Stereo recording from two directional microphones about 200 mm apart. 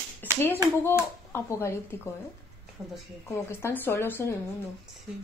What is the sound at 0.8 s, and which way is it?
Speech, 10° left (ahead or behind).